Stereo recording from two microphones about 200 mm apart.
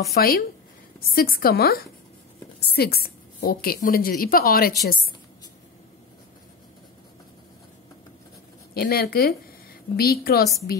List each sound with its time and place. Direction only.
0.1 s a woman's voice: 50° left (ahead or behind)
8.7 s a woman's voice: 50° left (ahead or behind)